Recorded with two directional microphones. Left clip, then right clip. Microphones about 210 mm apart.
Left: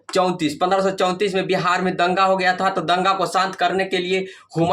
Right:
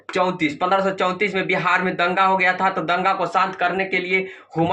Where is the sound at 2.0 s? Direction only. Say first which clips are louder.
Even; 30° left (ahead or behind).